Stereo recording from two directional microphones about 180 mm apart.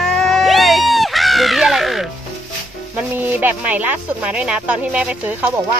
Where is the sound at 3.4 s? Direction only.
10° right (ahead or behind).